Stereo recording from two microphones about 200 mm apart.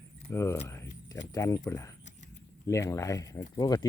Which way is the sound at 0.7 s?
15° left (ahead or behind).